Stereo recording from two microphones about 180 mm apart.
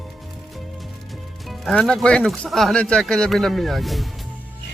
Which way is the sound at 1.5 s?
Centre (ahead or behind).